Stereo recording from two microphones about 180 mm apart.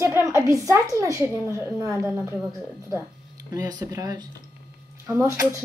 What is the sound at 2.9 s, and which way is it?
A woman's voice, 20° right (ahead or behind).